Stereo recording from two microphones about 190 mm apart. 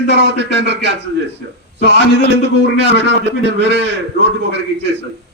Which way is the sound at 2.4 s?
65° right (ahead or behind).